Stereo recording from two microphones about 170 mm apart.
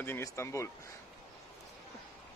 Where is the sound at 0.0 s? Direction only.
15° left (ahead or behind).